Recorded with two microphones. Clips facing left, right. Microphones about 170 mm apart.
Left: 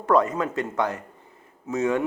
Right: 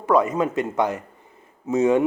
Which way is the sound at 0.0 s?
5° right (ahead or behind).